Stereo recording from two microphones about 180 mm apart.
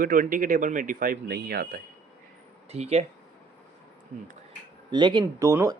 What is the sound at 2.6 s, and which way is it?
Speech, 35° right (ahead or behind).